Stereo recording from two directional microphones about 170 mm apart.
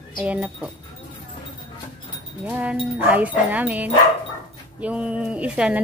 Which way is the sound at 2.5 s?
10° right (ahead or behind).